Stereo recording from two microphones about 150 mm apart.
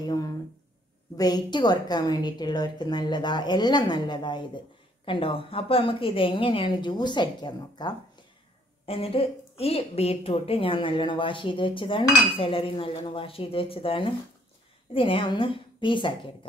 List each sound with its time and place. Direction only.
0.0 s a woman's voice: 25° left (ahead or behind)